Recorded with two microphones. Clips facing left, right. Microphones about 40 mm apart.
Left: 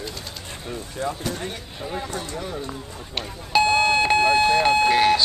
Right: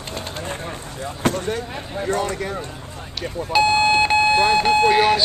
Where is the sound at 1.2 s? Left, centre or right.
Right.